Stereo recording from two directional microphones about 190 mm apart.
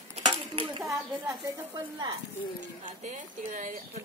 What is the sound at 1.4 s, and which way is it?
Speech, 20° right (ahead or behind).